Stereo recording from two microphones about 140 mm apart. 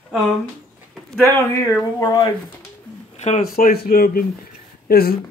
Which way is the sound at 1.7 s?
20° left (ahead or behind).